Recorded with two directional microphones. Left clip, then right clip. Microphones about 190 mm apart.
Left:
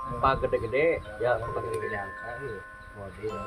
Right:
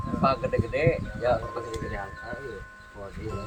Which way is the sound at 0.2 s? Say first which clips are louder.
Even; 40° left (ahead or behind).